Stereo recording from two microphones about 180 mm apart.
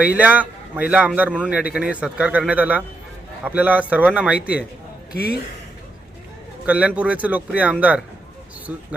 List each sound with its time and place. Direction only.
0.2 s a man's voice: 10° right (ahead or behind)
5.1 s speech: 60° left (ahead or behind)
6.7 s a man's voice: 5° right (ahead or behind)